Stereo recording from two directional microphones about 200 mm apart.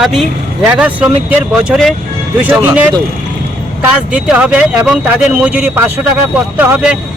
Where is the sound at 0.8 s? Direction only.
5° right (ahead or behind).